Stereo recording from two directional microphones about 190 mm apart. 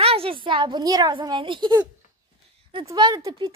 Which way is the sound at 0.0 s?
30° right (ahead or behind).